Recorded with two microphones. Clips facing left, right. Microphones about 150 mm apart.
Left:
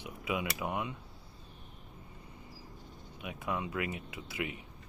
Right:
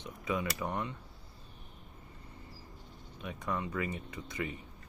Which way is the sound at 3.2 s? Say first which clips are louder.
Even; 10° left (ahead or behind).